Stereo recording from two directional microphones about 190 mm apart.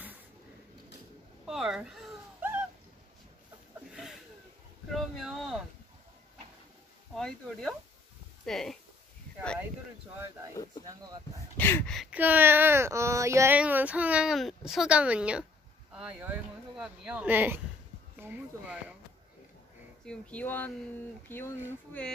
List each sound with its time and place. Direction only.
1.4 s dog: centre (ahead or behind)
3.9 s a sound: centre (ahead or behind)
7.2 s speech: centre (ahead or behind)
10.5 s speech: 20° left (ahead or behind)
11.5 s speech: 10° left (ahead or behind); by 18.9 s 10° right (ahead or behind)
20.1 s speech: 5° left (ahead or behind)